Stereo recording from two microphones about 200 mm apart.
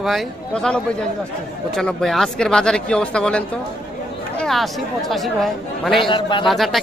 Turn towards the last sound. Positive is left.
turn(degrees=0)  # may be behind; listen again after turning